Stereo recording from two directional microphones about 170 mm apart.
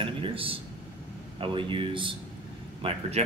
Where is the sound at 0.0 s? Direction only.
30° right (ahead or behind).